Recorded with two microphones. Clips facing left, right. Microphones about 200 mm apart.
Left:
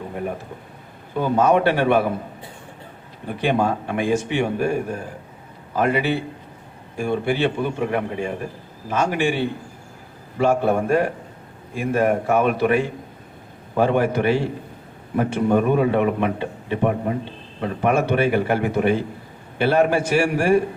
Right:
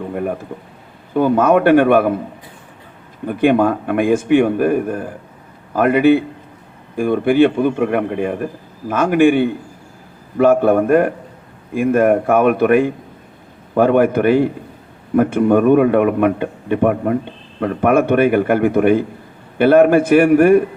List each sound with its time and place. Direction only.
0.1 s a man's voice: 55° right (ahead or behind)
3.2 s a man's voice: 55° right (ahead or behind)